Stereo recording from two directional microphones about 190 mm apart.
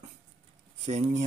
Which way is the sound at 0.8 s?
35° right (ahead or behind).